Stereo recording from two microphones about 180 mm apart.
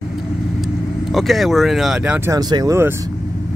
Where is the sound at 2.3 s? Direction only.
20° right (ahead or behind).